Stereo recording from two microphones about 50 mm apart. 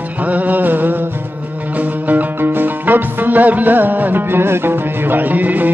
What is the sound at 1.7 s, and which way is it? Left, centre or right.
Music, right.